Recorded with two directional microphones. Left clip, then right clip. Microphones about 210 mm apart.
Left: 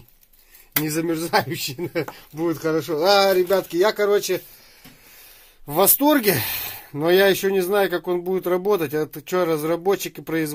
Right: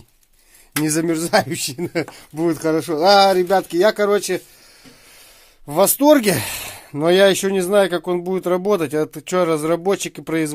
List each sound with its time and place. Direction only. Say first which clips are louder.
0.8 s speech: right 5 dB; 55° right (ahead or behind)
5.7 s speech: right 5 dB; 30° right (ahead or behind)